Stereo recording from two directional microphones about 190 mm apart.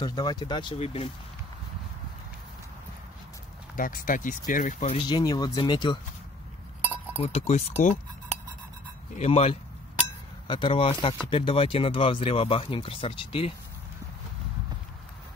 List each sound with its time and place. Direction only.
0.0 s speech: 20° left (ahead or behind)
3.7 s speech: 45° left (ahead or behind)
5.0 s speech: 20° left (ahead or behind)
7.2 s speech: 35° left (ahead or behind)
9.1 s speech: 35° left (ahead or behind)